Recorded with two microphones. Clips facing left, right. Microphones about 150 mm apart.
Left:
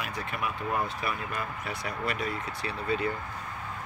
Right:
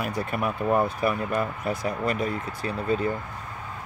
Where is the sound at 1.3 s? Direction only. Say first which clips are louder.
Right 8 dB; 50° right (ahead or behind).